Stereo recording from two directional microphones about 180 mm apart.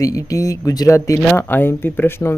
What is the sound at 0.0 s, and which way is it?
Speech, 20° left (ahead or behind).